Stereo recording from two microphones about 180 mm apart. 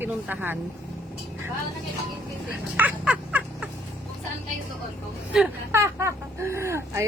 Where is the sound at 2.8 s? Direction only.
10° right (ahead or behind).